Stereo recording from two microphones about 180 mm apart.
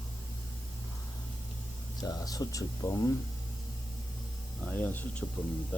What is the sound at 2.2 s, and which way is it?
Speech, 20° left (ahead or behind).